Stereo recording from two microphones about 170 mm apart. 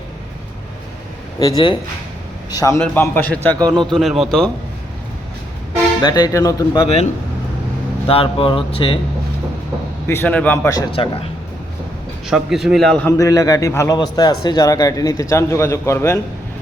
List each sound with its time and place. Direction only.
1.4 s a man's voice: 20° left (ahead or behind); by 4.5 s 5° left (ahead or behind)
6.0 s a man's voice: 25° left (ahead or behind)
8.0 s speech: 35° left (ahead or behind)
10.1 s a man's voice: 10° left (ahead or behind)
10.8 s speech: 30° left (ahead or behind)
12.3 s a man's voice: centre (ahead or behind)
13.1 s a man's voice: 20° left (ahead or behind)